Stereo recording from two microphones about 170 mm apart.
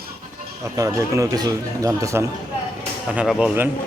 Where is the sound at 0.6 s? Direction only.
20° right (ahead or behind).